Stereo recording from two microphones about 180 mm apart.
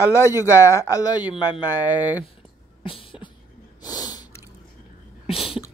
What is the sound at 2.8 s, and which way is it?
Beatboxing, 30° left (ahead or behind).